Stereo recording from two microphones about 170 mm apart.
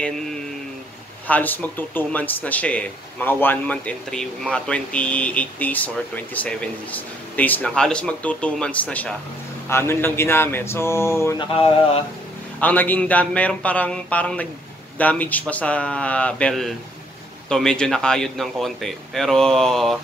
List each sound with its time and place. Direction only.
1.2 s speech: 10° left (ahead or behind)
11.3 s speech: 30° left (ahead or behind)
12.5 s speech: 10° left (ahead or behind)